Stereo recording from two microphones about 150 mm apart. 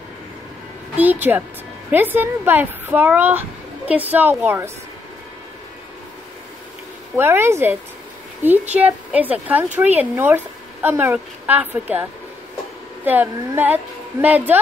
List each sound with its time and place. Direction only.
0.9 s speech: 10° right (ahead or behind)
7.2 s speech: 15° right (ahead or behind)